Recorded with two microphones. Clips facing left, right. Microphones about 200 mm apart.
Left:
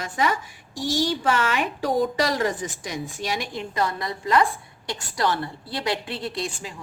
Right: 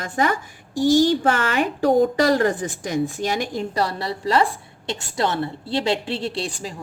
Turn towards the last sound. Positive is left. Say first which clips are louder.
# right 3 dB
turn(degrees=-35)  # may be behind; listen again after turning